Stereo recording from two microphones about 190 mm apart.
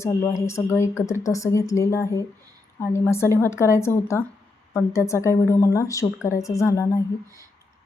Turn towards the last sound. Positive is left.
turn(degrees=15)  # may be behind; listen again after turning